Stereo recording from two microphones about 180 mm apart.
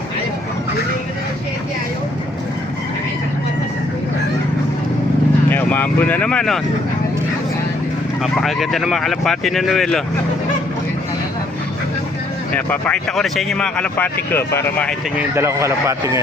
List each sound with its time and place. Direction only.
5.5 s vehicle: 10° left (ahead or behind)
8.2 s speech: centre (ahead or behind)
12.5 s speech: 10° left (ahead or behind)
15.4 s a man's voice: 15° right (ahead or behind)